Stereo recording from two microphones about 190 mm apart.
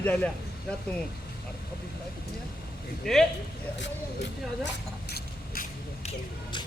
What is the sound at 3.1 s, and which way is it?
Speech, centre (ahead or behind).